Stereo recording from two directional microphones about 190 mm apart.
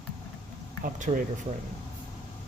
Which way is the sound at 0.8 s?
45° right (ahead or behind).